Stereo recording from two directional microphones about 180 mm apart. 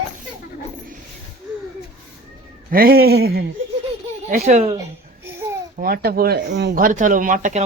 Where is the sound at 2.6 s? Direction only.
55° right (ahead or behind).